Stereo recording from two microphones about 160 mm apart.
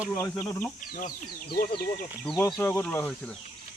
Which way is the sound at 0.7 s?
60° left (ahead or behind).